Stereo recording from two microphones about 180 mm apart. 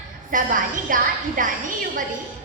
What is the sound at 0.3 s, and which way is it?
A woman's voice, 50° right (ahead or behind).